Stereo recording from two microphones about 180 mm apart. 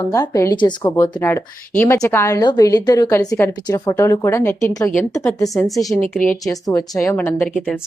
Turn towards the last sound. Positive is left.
turn(degrees=10)  # may be behind; listen again after turning